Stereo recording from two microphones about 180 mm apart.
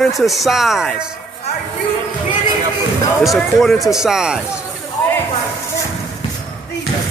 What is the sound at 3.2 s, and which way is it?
Speech, centre (ahead or behind).